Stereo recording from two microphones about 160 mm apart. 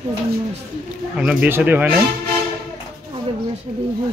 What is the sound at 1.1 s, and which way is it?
Speech, 10° right (ahead or behind).